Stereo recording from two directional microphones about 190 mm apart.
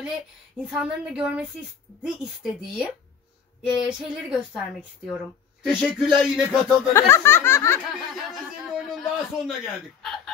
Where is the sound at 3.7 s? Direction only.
5° right (ahead or behind).